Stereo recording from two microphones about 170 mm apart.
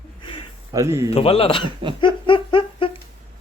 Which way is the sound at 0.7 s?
20° right (ahead or behind).